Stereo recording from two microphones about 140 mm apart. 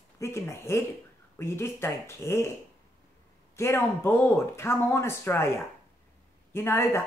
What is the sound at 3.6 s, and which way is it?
Speech, 15° left (ahead or behind).